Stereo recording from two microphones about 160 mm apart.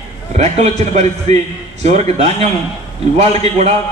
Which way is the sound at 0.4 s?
45° right (ahead or behind).